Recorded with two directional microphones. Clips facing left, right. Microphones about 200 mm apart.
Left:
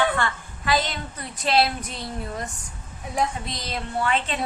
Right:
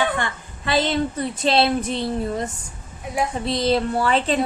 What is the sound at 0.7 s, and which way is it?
A woman's voice, 30° right (ahead or behind).